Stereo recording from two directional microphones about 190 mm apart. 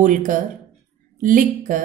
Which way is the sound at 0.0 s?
45° right (ahead or behind).